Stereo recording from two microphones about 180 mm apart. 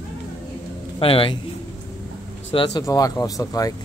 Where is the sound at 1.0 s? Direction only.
30° left (ahead or behind).